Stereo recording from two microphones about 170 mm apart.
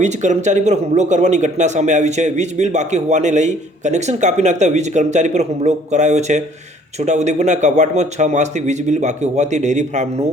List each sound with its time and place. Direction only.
0.0 s speech: 45° right (ahead or behind)